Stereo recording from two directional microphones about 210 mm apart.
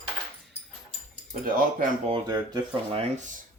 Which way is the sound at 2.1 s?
20° right (ahead or behind).